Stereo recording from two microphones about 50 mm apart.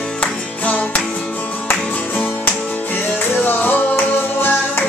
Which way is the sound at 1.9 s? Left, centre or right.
Left.